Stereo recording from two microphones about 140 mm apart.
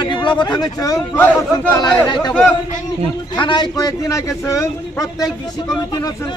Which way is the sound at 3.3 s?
30° left (ahead or behind).